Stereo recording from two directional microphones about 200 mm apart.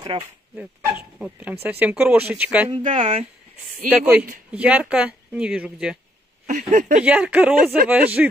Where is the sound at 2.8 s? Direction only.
40° right (ahead or behind).